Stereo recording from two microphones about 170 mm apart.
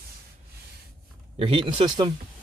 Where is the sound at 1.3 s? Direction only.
30° right (ahead or behind).